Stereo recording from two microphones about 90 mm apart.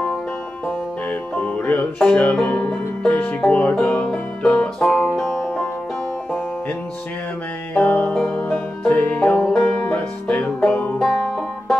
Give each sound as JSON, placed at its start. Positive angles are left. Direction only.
{"t": 1.3, "sound": "music", "side_deg": 15}
{"t": 7.7, "sound": "music", "side_deg": 15}
{"t": 9.6, "sound": "music", "side_deg": 30}
{"t": 9.9, "sound": "banjo", "side_deg": 10}